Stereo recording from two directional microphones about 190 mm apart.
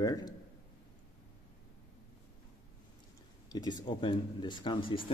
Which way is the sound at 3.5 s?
20° left (ahead or behind).